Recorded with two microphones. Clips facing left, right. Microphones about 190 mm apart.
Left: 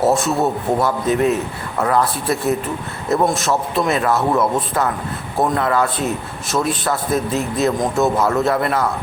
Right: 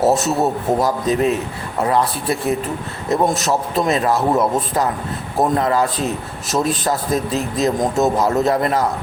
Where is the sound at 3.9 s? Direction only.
35° right (ahead or behind).